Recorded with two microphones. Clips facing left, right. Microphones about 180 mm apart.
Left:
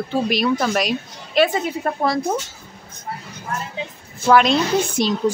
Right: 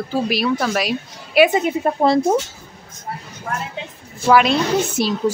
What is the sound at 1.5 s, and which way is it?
Speech, 20° right (ahead or behind).